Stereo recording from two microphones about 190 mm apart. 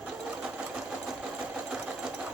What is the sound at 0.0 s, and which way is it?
Sewing machine, 5° right (ahead or behind).